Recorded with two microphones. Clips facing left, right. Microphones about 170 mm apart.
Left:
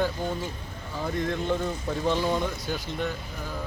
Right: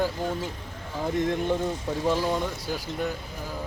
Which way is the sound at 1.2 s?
20° right (ahead or behind).